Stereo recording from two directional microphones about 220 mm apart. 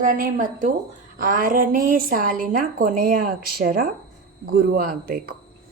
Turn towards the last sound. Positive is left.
turn(degrees=-40)  # may be behind; listen again after turning